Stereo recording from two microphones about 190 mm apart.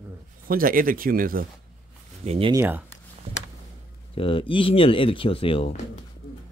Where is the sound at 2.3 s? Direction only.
30° right (ahead or behind).